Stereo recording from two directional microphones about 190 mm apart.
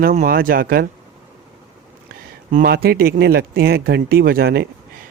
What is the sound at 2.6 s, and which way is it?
Speech, 55° right (ahead or behind).